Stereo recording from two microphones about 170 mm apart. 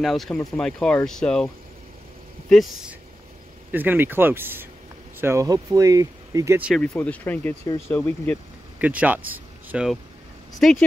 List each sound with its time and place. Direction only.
0.0 s speech: centre (ahead or behind)
2.5 s speech: centre (ahead or behind)
3.7 s speech: 10° right (ahead or behind)
6.8 s speech: 5° left (ahead or behind)
8.7 s speech: 10° right (ahead or behind)
10.6 s speech: 5° left (ahead or behind)